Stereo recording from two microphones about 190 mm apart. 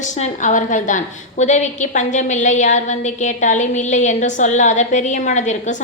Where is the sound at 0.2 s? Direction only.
40° left (ahead or behind).